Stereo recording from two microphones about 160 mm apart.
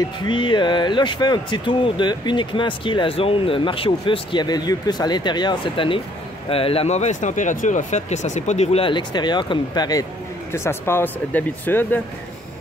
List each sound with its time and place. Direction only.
0.2 s speech: 30° left (ahead or behind); by 12.0 s 10° left (ahead or behind)